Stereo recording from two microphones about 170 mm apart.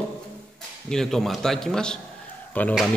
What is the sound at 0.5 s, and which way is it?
A man's voice, 5° left (ahead or behind).